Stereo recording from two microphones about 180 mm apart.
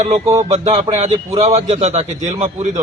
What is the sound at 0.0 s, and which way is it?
A man's voice, 35° right (ahead or behind).